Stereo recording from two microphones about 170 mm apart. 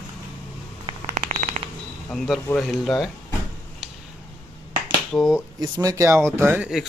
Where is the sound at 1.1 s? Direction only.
45° right (ahead or behind).